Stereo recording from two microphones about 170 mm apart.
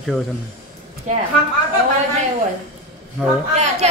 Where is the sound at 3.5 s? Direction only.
40° right (ahead or behind).